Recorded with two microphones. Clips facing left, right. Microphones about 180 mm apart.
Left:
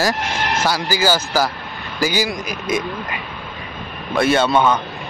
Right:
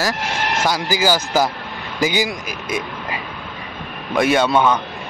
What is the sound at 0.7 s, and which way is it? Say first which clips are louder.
A man's voice: even; 20° right (ahead or behind).